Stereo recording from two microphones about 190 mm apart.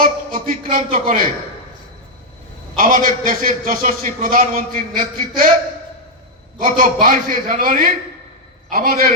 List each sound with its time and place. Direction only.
0.0 s a man's voice: 45° right (ahead or behind)
2.7 s a man's voice: 45° right (ahead or behind)
6.6 s a man's voice: 45° right (ahead or behind)